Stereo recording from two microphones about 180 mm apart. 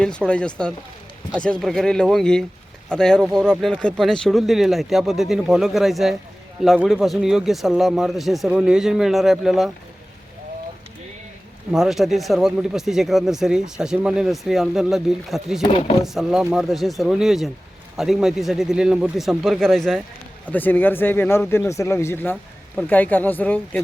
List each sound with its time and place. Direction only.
0.3 s speech: 5° left (ahead or behind)
11.7 s speech: centre (ahead or behind)
15.6 s speech: 30° left (ahead or behind)
16.0 s speech: centre (ahead or behind)